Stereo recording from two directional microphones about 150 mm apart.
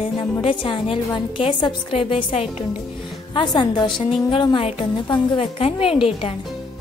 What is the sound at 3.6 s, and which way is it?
A woman's voice, 30° left (ahead or behind).